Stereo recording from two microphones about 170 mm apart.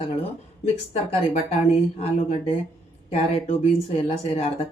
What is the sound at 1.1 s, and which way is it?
Speech, 35° left (ahead or behind).